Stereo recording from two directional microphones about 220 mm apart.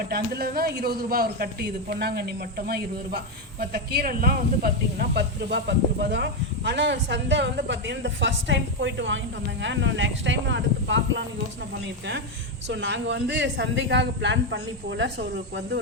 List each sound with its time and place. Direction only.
0.1 s a man's voice: 45° right (ahead or behind)
12.6 s a man's voice: 55° right (ahead or behind)